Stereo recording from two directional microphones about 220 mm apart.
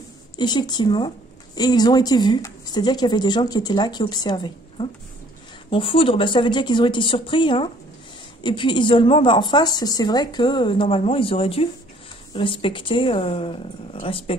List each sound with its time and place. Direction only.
0.4 s a woman's voice: 20° left (ahead or behind)